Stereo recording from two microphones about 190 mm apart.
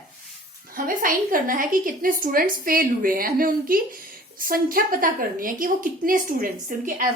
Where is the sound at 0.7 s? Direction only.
45° right (ahead or behind).